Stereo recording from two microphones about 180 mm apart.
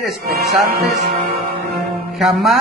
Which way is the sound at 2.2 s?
Centre (ahead or behind).